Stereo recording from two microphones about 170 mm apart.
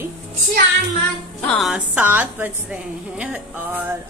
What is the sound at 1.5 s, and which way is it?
Speech, centre (ahead or behind).